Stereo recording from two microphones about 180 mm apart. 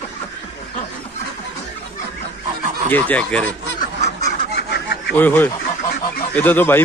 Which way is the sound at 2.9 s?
10° left (ahead or behind).